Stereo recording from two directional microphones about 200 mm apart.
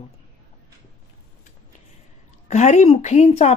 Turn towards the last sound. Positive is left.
turn(degrees=35)  # may be behind; listen again after turning